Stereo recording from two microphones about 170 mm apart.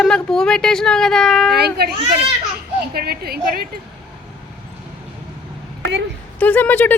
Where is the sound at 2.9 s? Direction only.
65° right (ahead or behind).